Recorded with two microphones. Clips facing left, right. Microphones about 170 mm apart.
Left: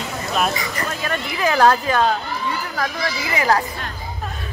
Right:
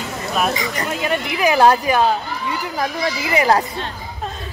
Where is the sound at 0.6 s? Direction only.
20° right (ahead or behind).